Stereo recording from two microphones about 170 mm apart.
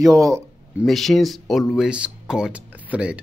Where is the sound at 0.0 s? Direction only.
20° right (ahead or behind).